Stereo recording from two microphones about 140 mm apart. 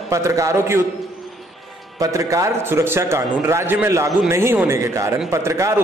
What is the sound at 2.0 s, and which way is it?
A man's voice, 25° right (ahead or behind).